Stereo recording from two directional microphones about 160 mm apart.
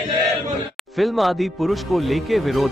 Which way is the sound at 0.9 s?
Centre (ahead or behind).